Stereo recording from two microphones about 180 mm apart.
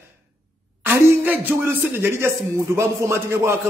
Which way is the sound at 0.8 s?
15° right (ahead or behind).